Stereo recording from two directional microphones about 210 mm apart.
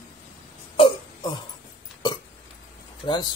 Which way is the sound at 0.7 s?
25° left (ahead or behind).